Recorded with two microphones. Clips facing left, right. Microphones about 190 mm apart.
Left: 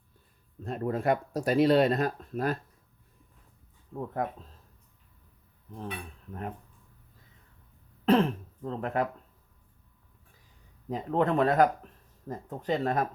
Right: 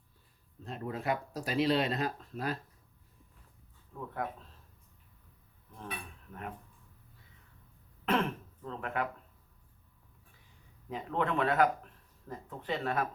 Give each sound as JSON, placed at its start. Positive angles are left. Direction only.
{"t": 0.6, "sound": "speech", "side_deg": 50}
{"t": 3.9, "sound": "speech", "side_deg": 40}
{"t": 8.0, "sound": "speech", "side_deg": 35}
{"t": 10.8, "sound": "speech", "side_deg": 40}